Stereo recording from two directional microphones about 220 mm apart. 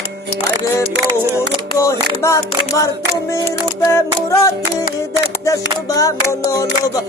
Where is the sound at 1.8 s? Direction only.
15° left (ahead or behind).